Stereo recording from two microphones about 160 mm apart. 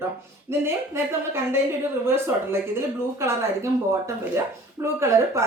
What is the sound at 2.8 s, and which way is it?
Speech, 15° right (ahead or behind).